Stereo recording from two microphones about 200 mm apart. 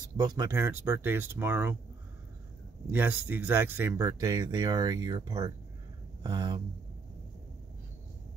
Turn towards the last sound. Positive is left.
turn(degrees=-20)  # may be behind; listen again after turning